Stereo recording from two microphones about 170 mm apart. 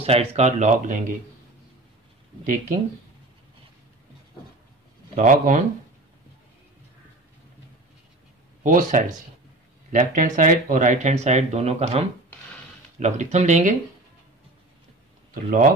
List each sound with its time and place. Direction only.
0.0 s speech: 35° right (ahead or behind)
2.4 s speech: 50° right (ahead or behind)
5.1 s speech: 50° right (ahead or behind)
8.6 s speech: 50° right (ahead or behind)
15.3 s speech: 55° right (ahead or behind)